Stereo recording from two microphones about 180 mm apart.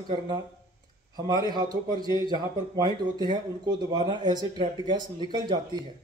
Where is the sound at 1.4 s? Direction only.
20° right (ahead or behind).